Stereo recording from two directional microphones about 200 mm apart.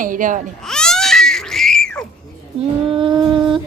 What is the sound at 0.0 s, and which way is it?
Speech, 40° right (ahead or behind).